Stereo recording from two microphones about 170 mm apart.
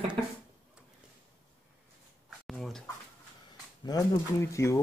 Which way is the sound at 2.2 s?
Centre (ahead or behind).